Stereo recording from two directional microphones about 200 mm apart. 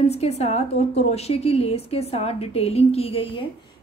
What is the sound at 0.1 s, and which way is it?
A woman's voice, 30° left (ahead or behind).